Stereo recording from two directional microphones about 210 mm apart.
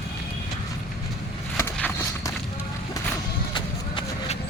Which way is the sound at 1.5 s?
10° left (ahead or behind).